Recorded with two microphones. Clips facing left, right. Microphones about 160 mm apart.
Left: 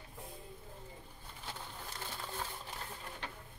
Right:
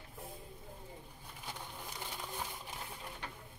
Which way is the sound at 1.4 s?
15° right (ahead or behind).